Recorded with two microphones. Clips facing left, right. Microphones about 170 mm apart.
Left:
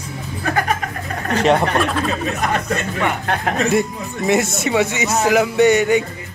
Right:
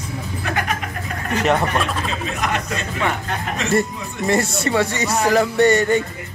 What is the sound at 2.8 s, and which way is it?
Speech, 75° left (ahead or behind).